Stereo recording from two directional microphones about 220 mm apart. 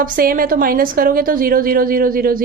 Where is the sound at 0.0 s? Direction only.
40° right (ahead or behind).